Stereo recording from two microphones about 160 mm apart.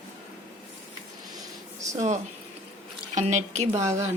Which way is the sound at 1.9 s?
45° right (ahead or behind).